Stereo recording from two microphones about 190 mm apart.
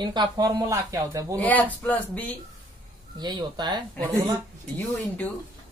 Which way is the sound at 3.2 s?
20° right (ahead or behind).